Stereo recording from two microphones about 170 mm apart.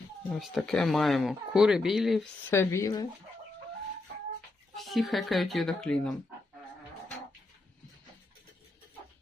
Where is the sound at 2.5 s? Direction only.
15° left (ahead or behind).